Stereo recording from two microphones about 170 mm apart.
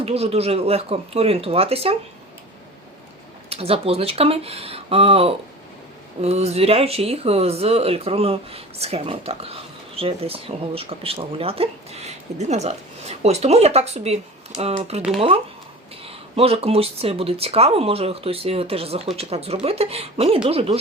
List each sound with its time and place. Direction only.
0.0 s speech: 35° right (ahead or behind)
3.5 s speech: 35° right (ahead or behind)
16.0 s speech: 35° right (ahead or behind)